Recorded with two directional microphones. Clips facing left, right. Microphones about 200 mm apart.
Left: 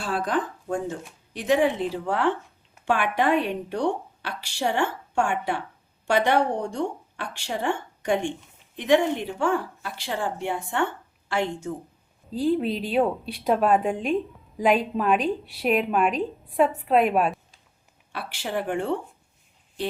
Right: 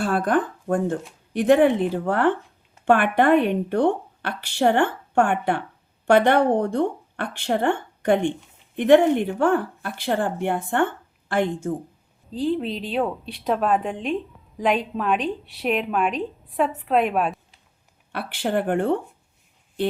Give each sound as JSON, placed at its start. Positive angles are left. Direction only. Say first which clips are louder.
{"t": 0.0, "sound": "a woman's voice", "louder": "right 5 dB", "side_deg": -55}
{"t": 12.3, "sound": "a woman's voice", "louder": "left 1 dB", "side_deg": 5}
{"t": 18.1, "sound": "a woman's voice", "louder": "right 5 dB", "side_deg": -60}